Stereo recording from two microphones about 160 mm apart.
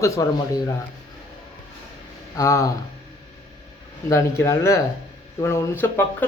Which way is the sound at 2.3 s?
20° left (ahead or behind).